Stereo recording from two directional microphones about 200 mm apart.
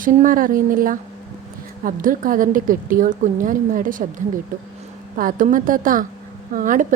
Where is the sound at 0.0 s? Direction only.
40° right (ahead or behind).